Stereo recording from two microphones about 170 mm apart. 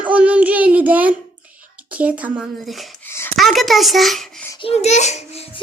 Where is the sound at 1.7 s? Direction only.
10° right (ahead or behind).